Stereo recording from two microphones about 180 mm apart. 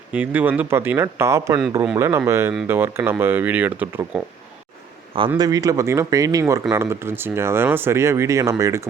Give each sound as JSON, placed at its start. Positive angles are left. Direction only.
{"t": 0.1, "sound": "speech", "side_deg": -10}
{"t": 5.4, "sound": "speech", "side_deg": -20}